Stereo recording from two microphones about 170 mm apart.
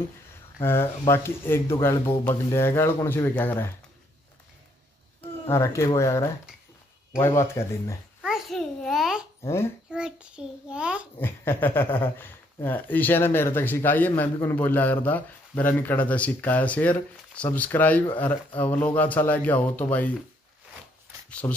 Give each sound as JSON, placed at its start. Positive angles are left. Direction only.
{"t": 0.6, "sound": "speech", "side_deg": 15}
{"t": 5.5, "sound": "speech", "side_deg": 15}
{"t": 8.2, "sound": "babbling", "side_deg": 0}
{"t": 9.4, "sound": "a child's voice", "side_deg": 15}
{"t": 9.8, "sound": "a child's voice", "side_deg": -5}
{"t": 11.1, "sound": "speech", "side_deg": 10}
{"t": 21.3, "sound": "a sound", "side_deg": 5}